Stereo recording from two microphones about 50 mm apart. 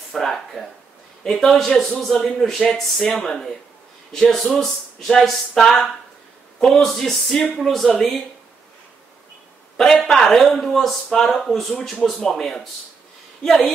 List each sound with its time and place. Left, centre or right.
0.1 s speech: centre
10.0 s speech: centre